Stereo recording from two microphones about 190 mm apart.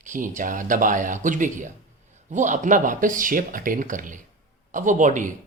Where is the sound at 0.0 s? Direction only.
40° right (ahead or behind).